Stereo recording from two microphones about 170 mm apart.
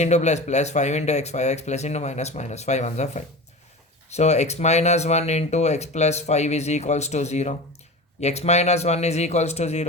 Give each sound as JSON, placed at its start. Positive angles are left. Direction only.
{"t": 0.0, "sound": "speech", "side_deg": 40}